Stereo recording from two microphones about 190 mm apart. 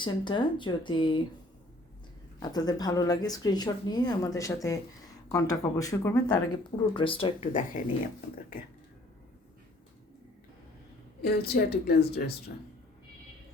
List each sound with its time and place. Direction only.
0.0 s speech: 25° left (ahead or behind)
2.4 s speech: 20° left (ahead or behind)
11.2 s a woman's voice: 55° left (ahead or behind)